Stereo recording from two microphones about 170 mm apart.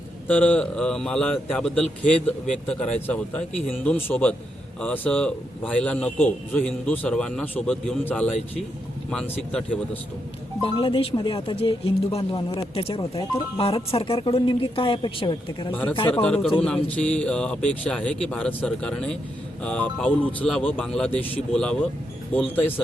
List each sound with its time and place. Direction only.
0.3 s a man's voice: 10° left (ahead or behind)
10.6 s speech: 30° left (ahead or behind)
15.7 s a man's voice: 10° left (ahead or behind)